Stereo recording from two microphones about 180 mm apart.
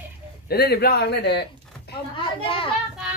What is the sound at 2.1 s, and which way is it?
Children playing, 30° left (ahead or behind).